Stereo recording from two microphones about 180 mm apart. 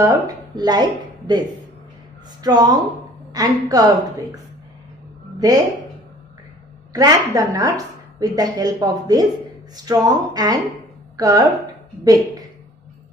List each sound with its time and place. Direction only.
0.0 s a woman's voice: 20° right (ahead or behind)
5.4 s a woman's voice: 20° right (ahead or behind)
6.9 s a woman's voice: 20° right (ahead or behind)